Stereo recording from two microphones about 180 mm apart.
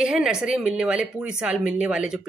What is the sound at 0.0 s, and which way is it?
Speech, 5° right (ahead or behind).